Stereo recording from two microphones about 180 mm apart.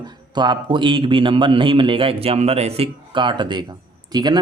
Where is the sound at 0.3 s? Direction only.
25° right (ahead or behind).